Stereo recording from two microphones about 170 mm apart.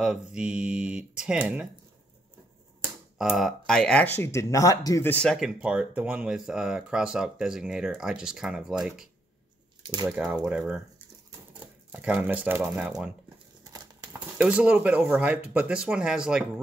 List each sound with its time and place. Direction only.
0.0 s speech: 5° right (ahead or behind)
2.8 s speech: 5° right (ahead or behind)
5.6 s speech: 5° right (ahead or behind)
9.8 s speech: 25° right (ahead or behind)
10.1 s speech: 5° right (ahead or behind)
14.4 s speech: 5° right (ahead or behind)